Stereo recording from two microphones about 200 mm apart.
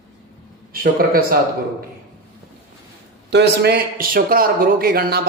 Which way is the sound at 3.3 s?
55° right (ahead or behind).